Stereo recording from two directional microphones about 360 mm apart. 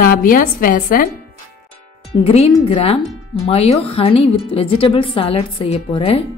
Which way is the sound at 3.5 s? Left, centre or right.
Centre.